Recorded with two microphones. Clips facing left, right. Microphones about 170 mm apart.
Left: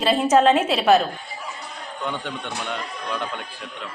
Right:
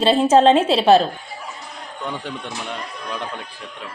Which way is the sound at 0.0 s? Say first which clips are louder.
Right 3 dB; 30° right (ahead or behind).